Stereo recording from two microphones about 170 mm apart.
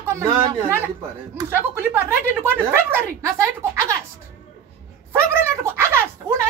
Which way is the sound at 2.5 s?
15° right (ahead or behind).